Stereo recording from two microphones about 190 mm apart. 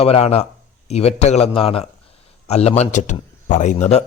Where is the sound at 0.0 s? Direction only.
30° left (ahead or behind).